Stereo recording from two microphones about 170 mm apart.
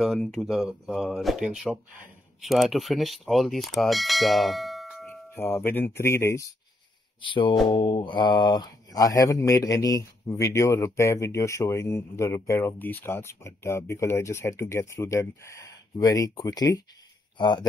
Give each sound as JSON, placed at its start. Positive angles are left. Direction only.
{"t": 0.0, "sound": "speech", "side_deg": 0}
{"t": 5.3, "sound": "speech", "side_deg": 15}
{"t": 7.2, "sound": "speech", "side_deg": 30}